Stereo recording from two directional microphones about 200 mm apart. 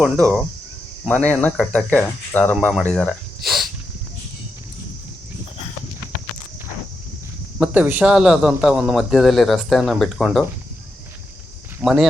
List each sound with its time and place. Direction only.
0.0 s speech: 5° right (ahead or behind)
1.0 s speech: 5° left (ahead or behind)
7.6 s speech: 5° right (ahead or behind)
11.8 s speech: centre (ahead or behind)